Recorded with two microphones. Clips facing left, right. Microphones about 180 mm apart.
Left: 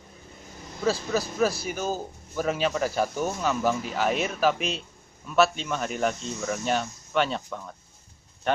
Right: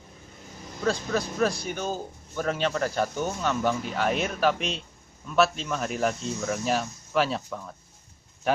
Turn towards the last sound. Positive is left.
turn(degrees=0)  # may be behind; listen again after turning